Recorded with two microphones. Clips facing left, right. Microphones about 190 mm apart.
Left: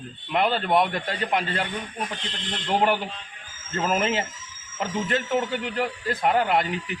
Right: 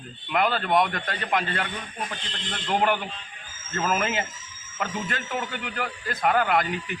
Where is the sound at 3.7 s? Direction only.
25° left (ahead or behind).